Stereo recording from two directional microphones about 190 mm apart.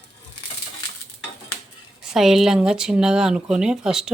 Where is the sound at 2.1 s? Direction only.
Centre (ahead or behind).